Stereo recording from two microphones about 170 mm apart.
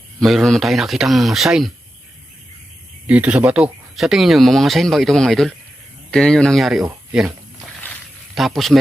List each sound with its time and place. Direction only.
0.2 s speech: centre (ahead or behind)
3.1 s speech: 5° right (ahead or behind)
8.4 s speech: centre (ahead or behind)